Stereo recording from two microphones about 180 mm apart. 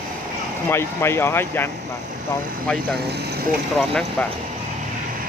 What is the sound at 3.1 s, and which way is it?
Speech, 65° right (ahead or behind).